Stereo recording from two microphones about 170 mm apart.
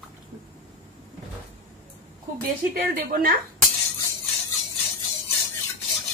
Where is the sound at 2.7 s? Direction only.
60° right (ahead or behind).